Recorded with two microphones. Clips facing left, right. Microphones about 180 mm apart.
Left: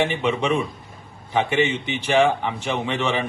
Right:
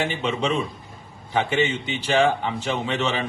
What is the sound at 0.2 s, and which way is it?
Speech, 25° right (ahead or behind).